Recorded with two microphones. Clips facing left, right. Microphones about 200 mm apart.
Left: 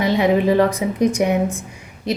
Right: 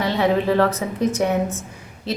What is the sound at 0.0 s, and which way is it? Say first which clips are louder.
A woman's voice: left 3 dB; 15° left (ahead or behind).